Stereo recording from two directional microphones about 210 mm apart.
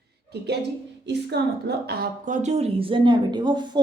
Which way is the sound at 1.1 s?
50° right (ahead or behind).